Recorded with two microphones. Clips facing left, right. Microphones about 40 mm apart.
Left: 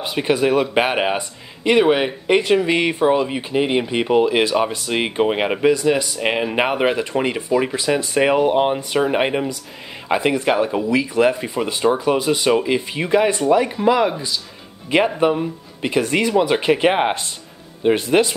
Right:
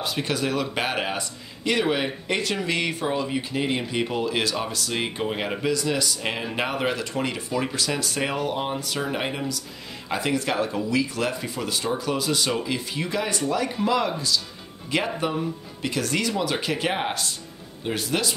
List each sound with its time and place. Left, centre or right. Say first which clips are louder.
0.0 s a man's voice: left 8 dB; left